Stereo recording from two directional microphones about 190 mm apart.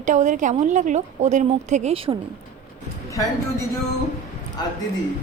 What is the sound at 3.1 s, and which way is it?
Speech, 15° left (ahead or behind).